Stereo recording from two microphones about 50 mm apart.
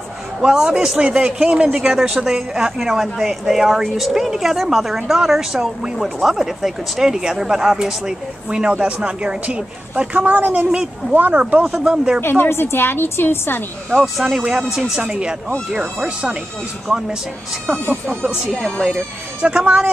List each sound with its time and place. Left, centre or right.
0.4 s a woman's voice: centre
6.2 s speech: centre
10.1 s a woman's voice: right
11.3 s speech: right
12.2 s a woman's voice: left
13.8 s a woman's voice: centre
15.0 s speech: centre
18.6 s a woman's voice: centre
19.4 s speech: right